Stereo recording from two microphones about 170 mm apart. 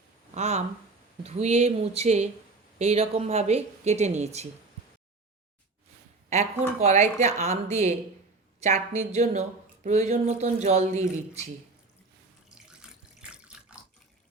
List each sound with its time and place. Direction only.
0.3 s speech: 40° right (ahead or behind)
6.3 s speech: 40° right (ahead or behind)
12.5 s water tap: 5° right (ahead or behind)